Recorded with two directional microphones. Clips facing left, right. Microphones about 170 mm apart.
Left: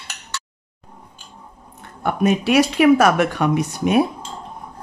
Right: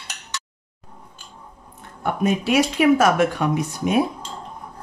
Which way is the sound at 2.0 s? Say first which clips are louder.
Left 3 dB; 70° left (ahead or behind).